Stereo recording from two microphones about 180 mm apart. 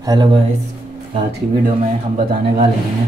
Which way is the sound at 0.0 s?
25° right (ahead or behind).